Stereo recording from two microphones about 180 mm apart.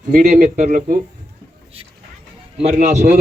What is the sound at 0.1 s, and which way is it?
Speech, 45° right (ahead or behind).